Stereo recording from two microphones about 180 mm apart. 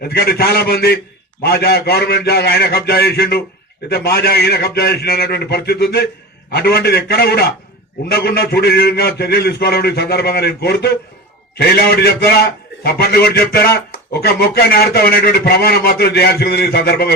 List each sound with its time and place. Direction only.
0.0 s speech: 60° left (ahead or behind)